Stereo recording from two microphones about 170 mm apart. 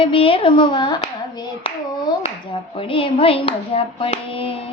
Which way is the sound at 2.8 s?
30° left (ahead or behind).